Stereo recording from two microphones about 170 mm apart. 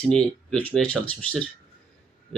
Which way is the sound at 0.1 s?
5° left (ahead or behind).